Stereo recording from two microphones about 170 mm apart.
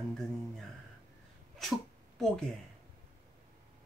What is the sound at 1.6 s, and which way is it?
Cat, centre (ahead or behind).